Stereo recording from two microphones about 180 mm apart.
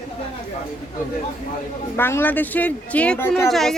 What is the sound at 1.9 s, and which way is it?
A woman's voice, 10° left (ahead or behind).